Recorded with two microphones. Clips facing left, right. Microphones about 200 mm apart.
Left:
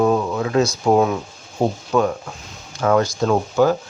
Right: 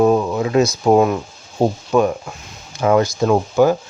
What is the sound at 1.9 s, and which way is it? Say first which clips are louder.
Speech: right 3 dB; 15° right (ahead or behind).